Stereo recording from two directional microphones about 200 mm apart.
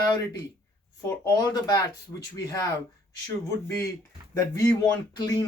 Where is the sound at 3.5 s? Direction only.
15° left (ahead or behind).